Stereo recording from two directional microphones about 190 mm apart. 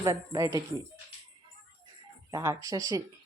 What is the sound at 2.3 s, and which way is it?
Speech, 20° right (ahead or behind).